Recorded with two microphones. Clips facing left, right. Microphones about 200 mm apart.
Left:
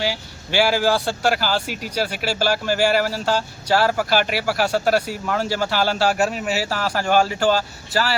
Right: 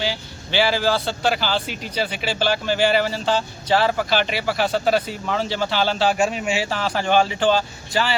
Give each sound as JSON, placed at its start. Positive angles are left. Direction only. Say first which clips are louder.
{"t": 0.0, "sound": "speech", "louder": "left 1 dB", "side_deg": 10}